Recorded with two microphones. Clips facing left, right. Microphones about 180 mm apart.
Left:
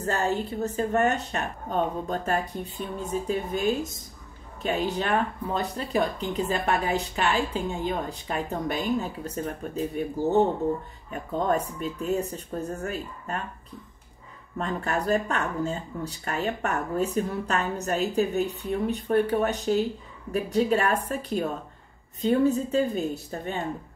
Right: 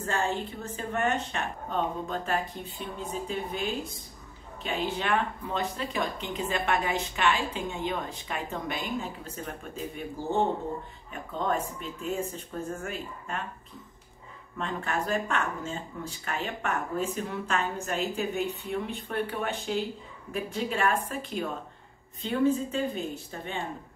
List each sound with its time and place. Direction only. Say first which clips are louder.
0.0 s speech: left 3 dB; 40° left (ahead or behind)
4.8 s speech: even; 40° left (ahead or behind)
14.6 s speech: left 3 dB; 40° left (ahead or behind)